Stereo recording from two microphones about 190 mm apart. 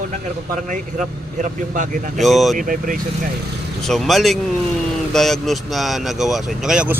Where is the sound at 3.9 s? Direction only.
Centre (ahead or behind).